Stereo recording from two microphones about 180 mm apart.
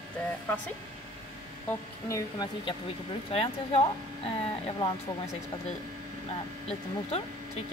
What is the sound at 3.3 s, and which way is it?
Speech, 30° left (ahead or behind).